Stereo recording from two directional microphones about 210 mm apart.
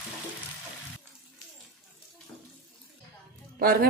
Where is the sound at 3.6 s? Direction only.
45° right (ahead or behind).